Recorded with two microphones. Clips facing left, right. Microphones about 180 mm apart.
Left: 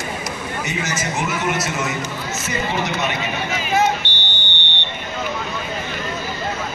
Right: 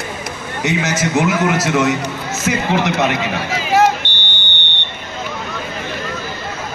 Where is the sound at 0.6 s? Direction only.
75° right (ahead or behind).